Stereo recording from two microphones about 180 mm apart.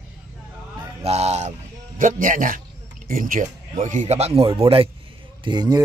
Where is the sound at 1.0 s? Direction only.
35° right (ahead or behind).